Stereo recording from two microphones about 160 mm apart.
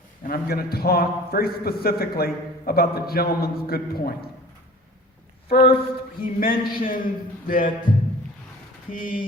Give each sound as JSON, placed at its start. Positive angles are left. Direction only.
{"t": 0.3, "sound": "a man's voice", "side_deg": 70}
{"t": 5.5, "sound": "a sound", "side_deg": 35}
{"t": 6.1, "sound": "a man's voice", "side_deg": 65}
{"t": 8.9, "sound": "a man's voice", "side_deg": 60}